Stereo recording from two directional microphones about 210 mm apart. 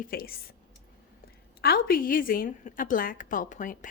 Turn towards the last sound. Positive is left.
turn(degrees=40)  # may be behind; listen again after turning